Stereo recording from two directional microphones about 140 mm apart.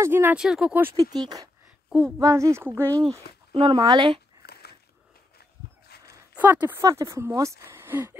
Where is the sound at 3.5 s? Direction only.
35° right (ahead or behind).